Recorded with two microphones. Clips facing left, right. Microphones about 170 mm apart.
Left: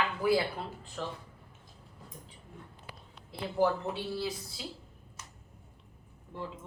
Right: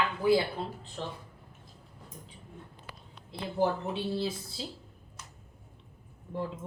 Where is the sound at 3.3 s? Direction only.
20° right (ahead or behind).